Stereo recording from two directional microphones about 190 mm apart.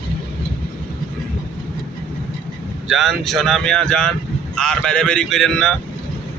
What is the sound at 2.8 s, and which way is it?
Speech, centre (ahead or behind).